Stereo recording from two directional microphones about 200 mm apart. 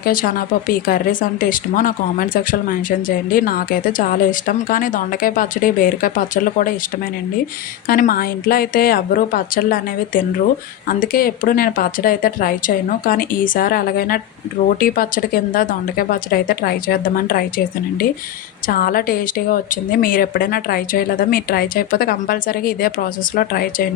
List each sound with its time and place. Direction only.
0.0 s speech: 45° left (ahead or behind)
7.9 s speech: 45° left (ahead or behind)
18.7 s speech: 45° left (ahead or behind)